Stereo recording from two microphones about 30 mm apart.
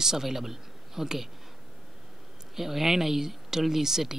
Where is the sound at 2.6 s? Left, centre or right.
Centre.